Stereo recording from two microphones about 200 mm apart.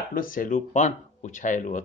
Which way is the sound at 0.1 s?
45° left (ahead or behind).